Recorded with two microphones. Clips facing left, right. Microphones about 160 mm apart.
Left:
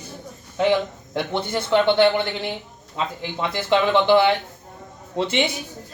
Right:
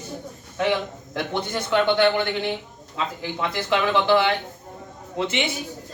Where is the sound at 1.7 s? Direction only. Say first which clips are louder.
Left 2 dB; 30° left (ahead or behind).